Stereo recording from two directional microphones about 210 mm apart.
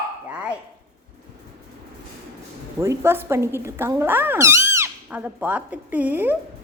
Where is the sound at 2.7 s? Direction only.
15° right (ahead or behind).